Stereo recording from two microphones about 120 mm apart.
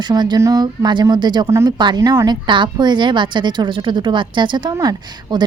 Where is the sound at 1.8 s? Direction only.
35° right (ahead or behind).